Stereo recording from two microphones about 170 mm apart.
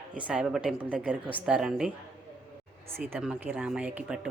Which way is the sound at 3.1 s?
10° right (ahead or behind).